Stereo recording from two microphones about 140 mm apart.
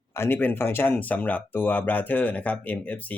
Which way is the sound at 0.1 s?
15° left (ahead or behind).